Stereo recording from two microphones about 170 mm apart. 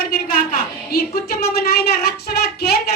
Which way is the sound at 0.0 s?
60° left (ahead or behind).